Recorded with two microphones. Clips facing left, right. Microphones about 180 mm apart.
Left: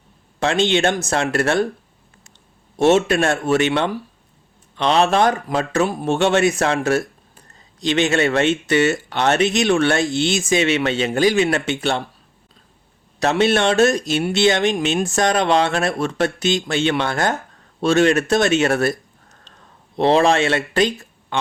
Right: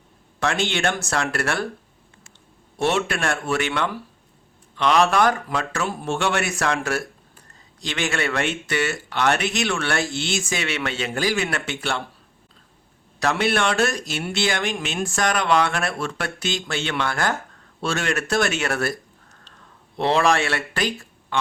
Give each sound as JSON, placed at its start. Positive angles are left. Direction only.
{"t": 0.3, "sound": "speech", "side_deg": 20}
{"t": 2.7, "sound": "speech", "side_deg": 20}
{"t": 13.1, "sound": "speech", "side_deg": 20}
{"t": 20.0, "sound": "speech", "side_deg": 20}